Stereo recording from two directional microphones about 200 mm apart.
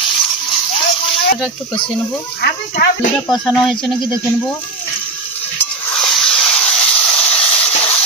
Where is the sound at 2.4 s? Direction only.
50° left (ahead or behind).